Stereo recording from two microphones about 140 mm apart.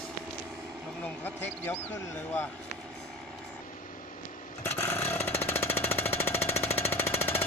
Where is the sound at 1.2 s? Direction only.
15° left (ahead or behind).